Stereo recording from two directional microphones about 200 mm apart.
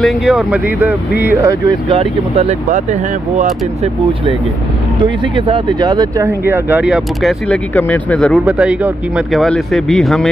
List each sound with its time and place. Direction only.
0.0 s speech: centre (ahead or behind)
1.9 s speech: 30° right (ahead or behind)
5.0 s speech: 25° right (ahead or behind); by 10.2 s centre (ahead or behind)